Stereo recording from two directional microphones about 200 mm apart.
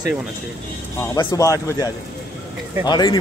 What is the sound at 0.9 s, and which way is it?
Speech, 15° left (ahead or behind).